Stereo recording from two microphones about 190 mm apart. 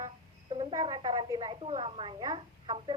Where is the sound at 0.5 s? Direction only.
25° right (ahead or behind).